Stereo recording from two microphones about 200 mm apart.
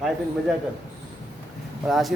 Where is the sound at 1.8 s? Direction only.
Centre (ahead or behind).